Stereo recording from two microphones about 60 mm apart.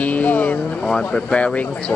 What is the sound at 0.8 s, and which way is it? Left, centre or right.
Speech, centre.